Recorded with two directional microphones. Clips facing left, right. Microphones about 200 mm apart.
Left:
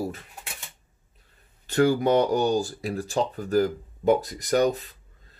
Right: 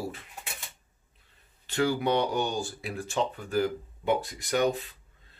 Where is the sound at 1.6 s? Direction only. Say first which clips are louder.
Left 6 dB; 45° left (ahead or behind).